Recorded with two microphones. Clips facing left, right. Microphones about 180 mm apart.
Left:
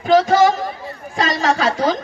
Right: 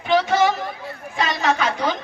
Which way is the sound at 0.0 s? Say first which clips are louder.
Left 5 dB; 40° left (ahead or behind).